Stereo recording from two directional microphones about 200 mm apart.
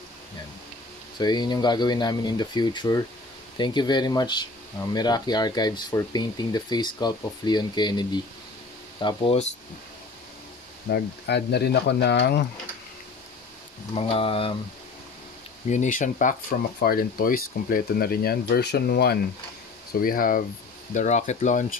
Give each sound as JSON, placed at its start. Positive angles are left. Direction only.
{"t": 1.1, "sound": "speech", "side_deg": 20}
{"t": 10.9, "sound": "speech", "side_deg": 55}
{"t": 13.9, "sound": "speech", "side_deg": 30}
{"t": 15.7, "sound": "speech", "side_deg": 40}